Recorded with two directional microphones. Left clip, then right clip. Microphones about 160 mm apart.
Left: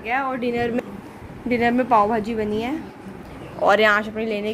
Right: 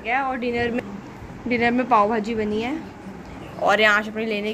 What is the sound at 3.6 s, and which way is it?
Speech, 30° left (ahead or behind).